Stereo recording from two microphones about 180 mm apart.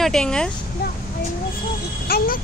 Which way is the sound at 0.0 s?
5° left (ahead or behind).